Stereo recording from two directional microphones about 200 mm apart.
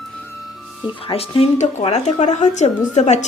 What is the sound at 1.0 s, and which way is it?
A woman's voice, 30° left (ahead or behind).